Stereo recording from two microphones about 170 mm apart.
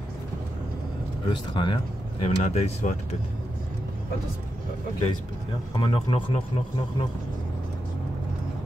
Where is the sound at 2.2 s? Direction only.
40° left (ahead or behind).